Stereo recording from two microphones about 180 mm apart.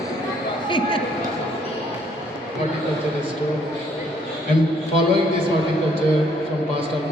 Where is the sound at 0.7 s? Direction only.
25° left (ahead or behind).